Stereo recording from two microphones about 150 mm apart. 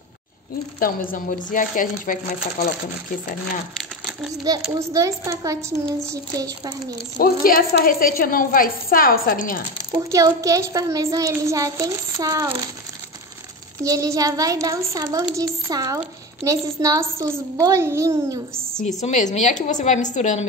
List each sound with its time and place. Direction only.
0.7 s speech: 65° left (ahead or behind)
4.7 s a child's voice: 20° right (ahead or behind)
7.2 s a woman's voice: 70° left (ahead or behind)
10.1 s a child's voice: 20° right (ahead or behind)
13.8 s a child's voice: 20° right (ahead or behind)
18.9 s a woman's voice: 50° left (ahead or behind)